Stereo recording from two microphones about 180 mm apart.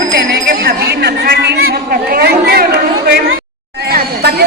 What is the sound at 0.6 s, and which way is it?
A woman's voice, 60° right (ahead or behind).